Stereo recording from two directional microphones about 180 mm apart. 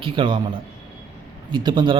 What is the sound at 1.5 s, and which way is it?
Speech, 25° right (ahead or behind).